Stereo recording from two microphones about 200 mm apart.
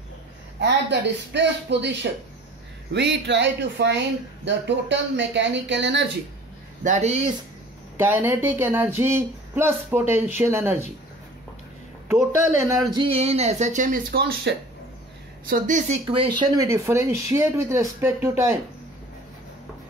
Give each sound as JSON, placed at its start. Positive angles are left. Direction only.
{"t": 0.6, "sound": "speech", "side_deg": -60}
{"t": 6.8, "sound": "speech", "side_deg": -35}
{"t": 8.0, "sound": "speech", "side_deg": -10}
{"t": 12.4, "sound": "speech", "side_deg": -20}
{"t": 15.4, "sound": "speech", "side_deg": -40}
{"t": 16.1, "sound": "speech", "side_deg": -25}